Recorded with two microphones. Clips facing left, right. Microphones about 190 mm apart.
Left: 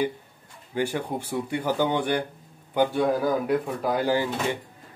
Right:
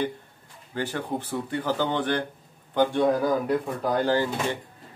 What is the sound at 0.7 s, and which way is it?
Speech, 10° left (ahead or behind).